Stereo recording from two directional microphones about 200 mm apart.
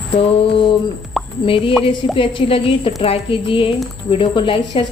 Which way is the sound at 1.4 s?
25° left (ahead or behind).